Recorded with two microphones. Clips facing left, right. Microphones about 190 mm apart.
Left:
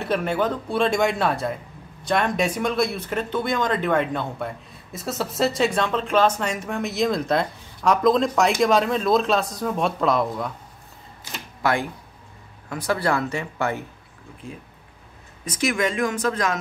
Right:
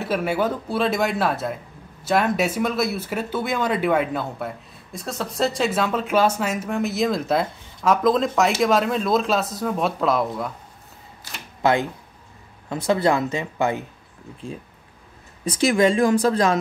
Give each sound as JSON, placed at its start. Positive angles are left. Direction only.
{"t": 0.0, "sound": "speech", "side_deg": -5}
{"t": 11.6, "sound": "speech", "side_deg": -20}
{"t": 15.4, "sound": "speech", "side_deg": -30}